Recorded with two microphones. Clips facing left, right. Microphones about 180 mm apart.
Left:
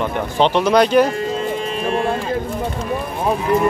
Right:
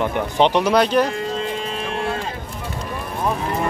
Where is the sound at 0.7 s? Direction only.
Centre (ahead or behind).